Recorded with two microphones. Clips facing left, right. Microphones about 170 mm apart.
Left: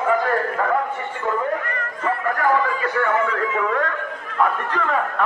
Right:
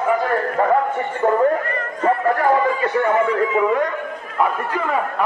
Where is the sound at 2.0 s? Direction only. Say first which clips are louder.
Right 4 dB; 35° right (ahead or behind); by 5.2 s 10° right (ahead or behind).